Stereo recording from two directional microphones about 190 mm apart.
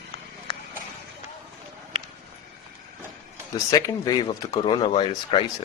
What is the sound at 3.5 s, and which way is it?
A man's voice, 20° left (ahead or behind).